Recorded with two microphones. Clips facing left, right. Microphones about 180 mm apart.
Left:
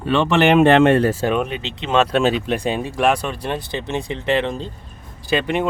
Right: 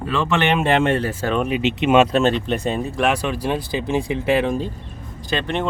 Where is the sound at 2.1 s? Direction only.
Centre (ahead or behind).